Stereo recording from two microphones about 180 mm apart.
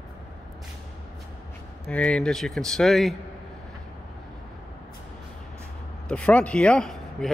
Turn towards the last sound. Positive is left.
turn(degrees=5)  # may be behind; listen again after turning